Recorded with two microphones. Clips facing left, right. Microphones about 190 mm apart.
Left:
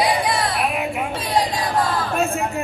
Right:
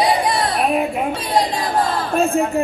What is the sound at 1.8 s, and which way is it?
Speech, 35° right (ahead or behind).